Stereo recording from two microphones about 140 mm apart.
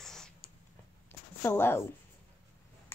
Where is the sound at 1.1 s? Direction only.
15° left (ahead or behind).